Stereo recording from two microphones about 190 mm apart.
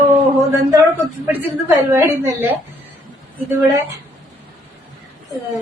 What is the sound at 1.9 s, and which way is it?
Speech, 15° right (ahead or behind).